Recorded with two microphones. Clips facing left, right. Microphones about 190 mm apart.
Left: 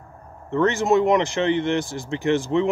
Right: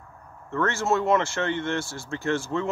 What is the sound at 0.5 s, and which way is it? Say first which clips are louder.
Speech: left 6 dB; 15° left (ahead or behind).